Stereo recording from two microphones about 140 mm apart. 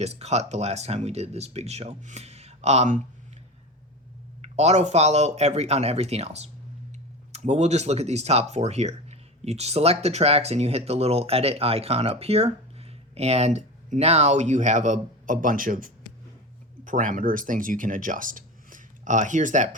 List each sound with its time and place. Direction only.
0.0 s speech: 50° right (ahead or behind)
4.4 s speech: 50° right (ahead or behind); by 15.9 s 85° right
16.8 s speech: 70° right (ahead or behind)